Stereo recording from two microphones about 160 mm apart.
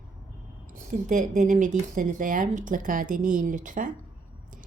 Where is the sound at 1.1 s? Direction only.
50° right (ahead or behind).